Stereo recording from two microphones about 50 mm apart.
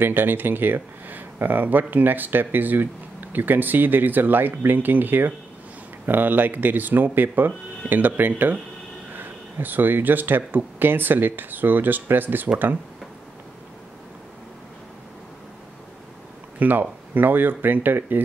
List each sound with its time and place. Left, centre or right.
0.0 s speech: right
16.5 s speech: right